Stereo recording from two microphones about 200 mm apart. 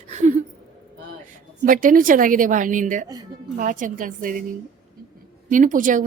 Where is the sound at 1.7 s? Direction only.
40° right (ahead or behind).